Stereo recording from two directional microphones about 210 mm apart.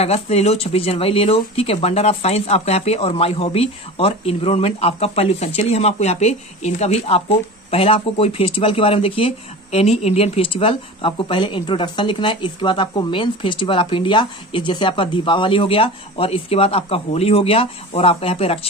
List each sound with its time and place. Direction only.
0.0 s speech: 30° left (ahead or behind)